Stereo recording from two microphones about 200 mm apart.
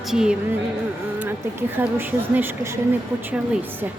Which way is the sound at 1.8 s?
10° right (ahead or behind).